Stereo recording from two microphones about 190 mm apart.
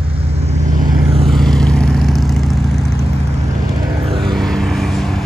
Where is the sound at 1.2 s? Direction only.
Centre (ahead or behind).